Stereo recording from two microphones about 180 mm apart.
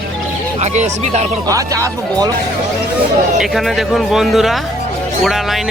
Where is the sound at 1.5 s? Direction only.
20° right (ahead or behind).